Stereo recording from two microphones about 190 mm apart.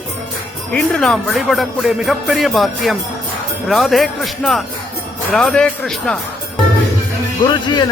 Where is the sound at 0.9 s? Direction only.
5° left (ahead or behind).